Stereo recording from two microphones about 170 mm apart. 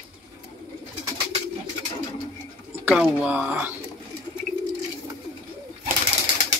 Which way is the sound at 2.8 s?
5° right (ahead or behind).